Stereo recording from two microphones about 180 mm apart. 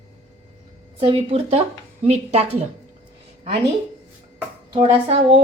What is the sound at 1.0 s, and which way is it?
Speech, 30° right (ahead or behind).